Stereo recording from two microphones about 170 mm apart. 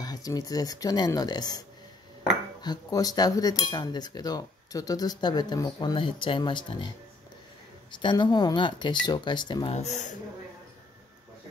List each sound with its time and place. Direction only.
0.0 s speech: 20° left (ahead or behind)
2.6 s speech: 25° left (ahead or behind)
8.0 s speech: 25° left (ahead or behind)
9.8 s speech: 40° left (ahead or behind)